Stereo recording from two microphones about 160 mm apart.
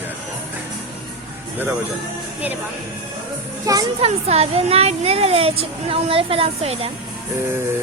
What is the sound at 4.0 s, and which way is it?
Speech, 40° right (ahead or behind).